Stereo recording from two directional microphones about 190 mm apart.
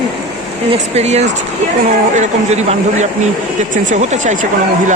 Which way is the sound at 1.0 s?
35° right (ahead or behind).